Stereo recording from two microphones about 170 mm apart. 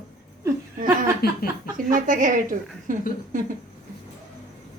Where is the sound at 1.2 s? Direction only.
65° left (ahead or behind).